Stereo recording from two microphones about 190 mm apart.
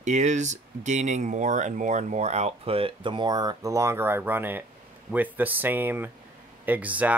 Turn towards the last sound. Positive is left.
turn(degrees=-10)  # may be behind; listen again after turning